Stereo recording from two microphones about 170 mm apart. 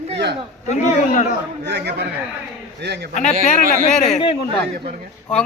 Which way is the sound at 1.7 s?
80° right.